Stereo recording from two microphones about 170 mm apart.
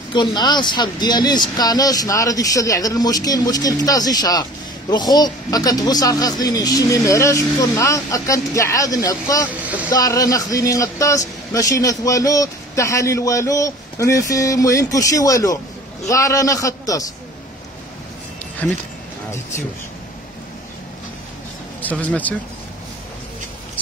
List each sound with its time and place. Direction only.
0.1 s speech: 25° left (ahead or behind)
9.5 s speech: 10° right (ahead or behind)
9.8 s speech: 20° left (ahead or behind)
18.6 s speech: 10° left (ahead or behind)
21.8 s speech: 10° left (ahead or behind)